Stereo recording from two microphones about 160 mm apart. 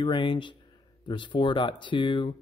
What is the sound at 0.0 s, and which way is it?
Speech, 30° left (ahead or behind).